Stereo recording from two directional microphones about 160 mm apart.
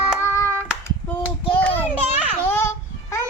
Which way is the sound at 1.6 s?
10° left (ahead or behind).